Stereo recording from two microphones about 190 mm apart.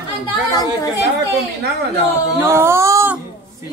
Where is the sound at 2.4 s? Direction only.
15° right (ahead or behind).